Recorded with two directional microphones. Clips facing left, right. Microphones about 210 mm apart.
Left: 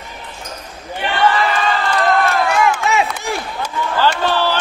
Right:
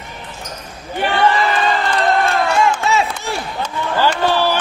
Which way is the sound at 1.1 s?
25° right (ahead or behind).